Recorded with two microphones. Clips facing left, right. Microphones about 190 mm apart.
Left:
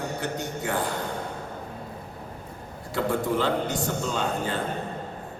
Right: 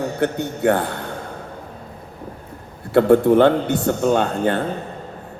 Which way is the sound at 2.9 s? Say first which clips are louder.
Right 13 dB; 60° right (ahead or behind).